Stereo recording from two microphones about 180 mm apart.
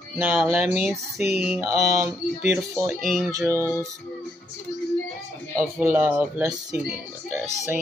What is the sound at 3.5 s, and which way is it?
Music, 15° left (ahead or behind).